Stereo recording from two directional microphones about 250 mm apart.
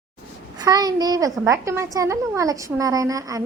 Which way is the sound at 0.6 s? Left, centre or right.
Centre.